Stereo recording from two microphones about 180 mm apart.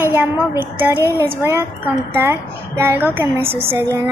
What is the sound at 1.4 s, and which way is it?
Speech, 15° right (ahead or behind).